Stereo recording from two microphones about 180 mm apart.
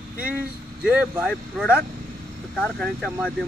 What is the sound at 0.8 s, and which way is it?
Speech, 5° right (ahead or behind).